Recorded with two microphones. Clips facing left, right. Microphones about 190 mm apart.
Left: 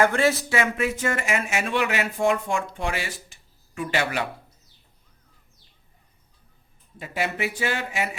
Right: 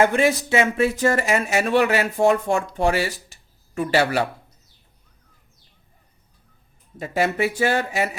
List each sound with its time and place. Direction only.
0.0 s speech: 15° right (ahead or behind); by 4.3 s 35° right (ahead or behind)
6.9 s speech: 40° right (ahead or behind)